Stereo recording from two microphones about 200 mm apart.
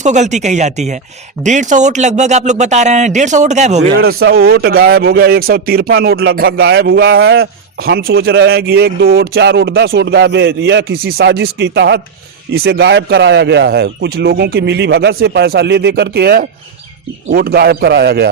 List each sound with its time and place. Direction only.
0.0 s speech: 35° right (ahead or behind)
4.3 s a man's voice: 50° right (ahead or behind)